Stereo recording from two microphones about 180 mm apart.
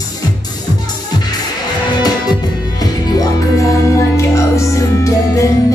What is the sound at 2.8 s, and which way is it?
Music, 20° left (ahead or behind).